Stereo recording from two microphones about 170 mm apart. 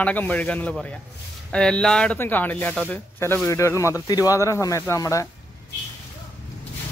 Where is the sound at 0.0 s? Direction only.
10° left (ahead or behind).